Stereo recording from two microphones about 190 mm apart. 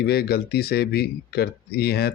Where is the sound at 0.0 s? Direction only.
55° left (ahead or behind).